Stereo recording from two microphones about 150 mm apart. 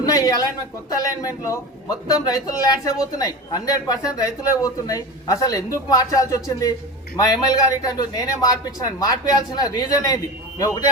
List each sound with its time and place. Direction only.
0.0 s a man's voice: 25° left (ahead or behind)